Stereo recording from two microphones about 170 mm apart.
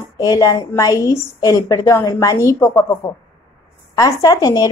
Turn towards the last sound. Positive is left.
turn(degrees=20)  # may be behind; listen again after turning